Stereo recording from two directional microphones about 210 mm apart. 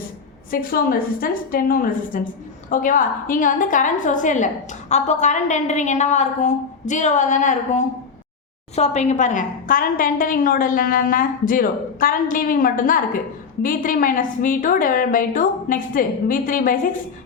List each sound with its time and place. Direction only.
0.5 s a woman's voice: 45° left (ahead or behind)